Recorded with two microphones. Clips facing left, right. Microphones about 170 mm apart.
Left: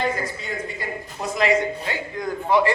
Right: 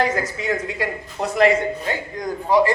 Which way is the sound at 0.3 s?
85° right.